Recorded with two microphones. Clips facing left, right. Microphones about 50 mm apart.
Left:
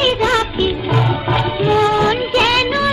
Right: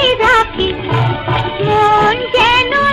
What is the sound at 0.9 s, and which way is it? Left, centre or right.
Music, centre.